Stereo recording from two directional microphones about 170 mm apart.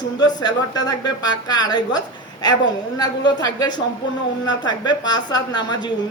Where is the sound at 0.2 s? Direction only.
25° left (ahead or behind).